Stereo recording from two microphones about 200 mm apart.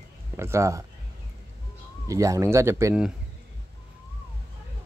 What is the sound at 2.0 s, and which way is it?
Speech, 15° right (ahead or behind).